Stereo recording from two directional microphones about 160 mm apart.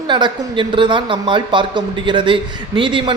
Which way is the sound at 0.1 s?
30° right (ahead or behind).